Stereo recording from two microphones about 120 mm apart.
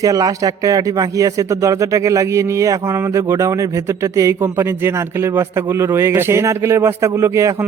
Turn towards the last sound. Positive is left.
turn(degrees=-25)  # may be behind; listen again after turning